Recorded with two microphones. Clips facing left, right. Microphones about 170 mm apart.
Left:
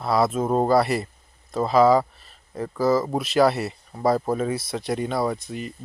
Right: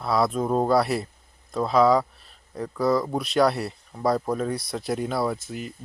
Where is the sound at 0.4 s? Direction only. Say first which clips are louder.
Left 2 dB; 20° left (ahead or behind).